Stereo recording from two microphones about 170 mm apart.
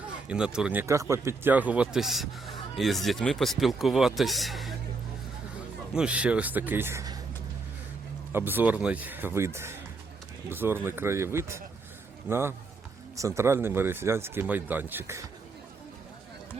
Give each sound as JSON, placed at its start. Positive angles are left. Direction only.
{"t": 0.3, "sound": "speech", "side_deg": -5}
{"t": 5.9, "sound": "speech", "side_deg": -5}
{"t": 8.3, "sound": "speech", "side_deg": -10}